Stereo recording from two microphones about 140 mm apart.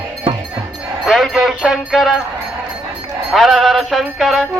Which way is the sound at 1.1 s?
Centre (ahead or behind).